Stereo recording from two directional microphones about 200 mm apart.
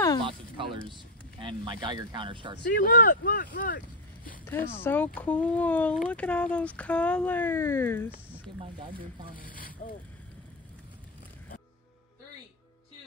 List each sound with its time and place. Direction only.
0.2 s speech: 25° right (ahead or behind)
2.7 s speech: 40° left (ahead or behind)
4.5 s speech: 10° left (ahead or behind)
9.3 s speech: 45° left (ahead or behind)